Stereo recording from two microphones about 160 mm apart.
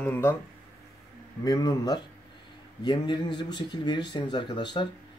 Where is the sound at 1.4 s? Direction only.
25° left (ahead or behind).